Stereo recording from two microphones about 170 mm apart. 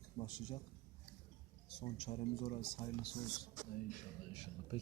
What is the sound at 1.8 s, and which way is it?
Speech, 40° left (ahead or behind).